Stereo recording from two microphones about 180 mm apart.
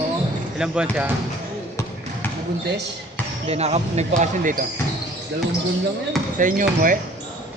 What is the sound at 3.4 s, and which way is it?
Speech, 35° right (ahead or behind).